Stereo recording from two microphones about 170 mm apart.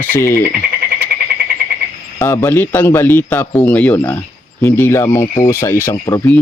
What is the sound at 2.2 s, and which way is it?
Speech, 15° left (ahead or behind).